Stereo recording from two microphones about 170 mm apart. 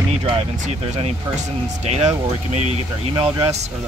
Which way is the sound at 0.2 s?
35° right (ahead or behind).